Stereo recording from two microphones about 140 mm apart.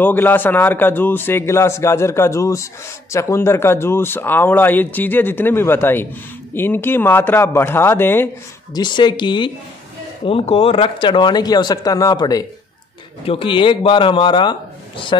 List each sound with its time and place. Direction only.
0.0 s a man's voice: 15° left (ahead or behind)
8.7 s speech: 30° left (ahead or behind)
13.2 s speech: 40° left (ahead or behind)